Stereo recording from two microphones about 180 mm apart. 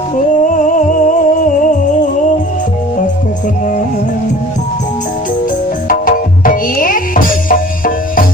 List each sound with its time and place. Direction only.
0.2 s music: 45° left (ahead or behind)
5.9 s music: 50° left (ahead or behind)